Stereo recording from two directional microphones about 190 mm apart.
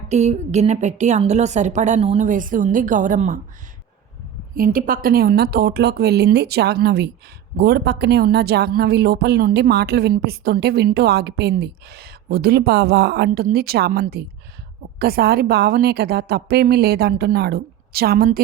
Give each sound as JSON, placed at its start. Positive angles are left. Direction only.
{"t": 0.1, "sound": "a woman's voice", "side_deg": -35}
{"t": 4.5, "sound": "a woman's voice", "side_deg": -45}